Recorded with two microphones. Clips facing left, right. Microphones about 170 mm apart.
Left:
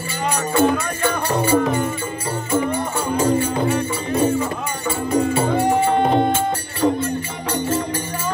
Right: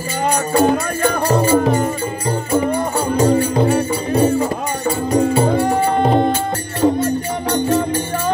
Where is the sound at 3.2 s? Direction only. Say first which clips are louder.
Right 4 dB; 35° right (ahead or behind).